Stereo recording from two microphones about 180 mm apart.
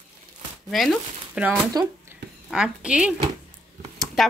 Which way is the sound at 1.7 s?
20° right (ahead or behind).